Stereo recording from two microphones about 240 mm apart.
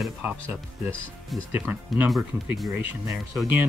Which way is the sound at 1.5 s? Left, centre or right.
Centre.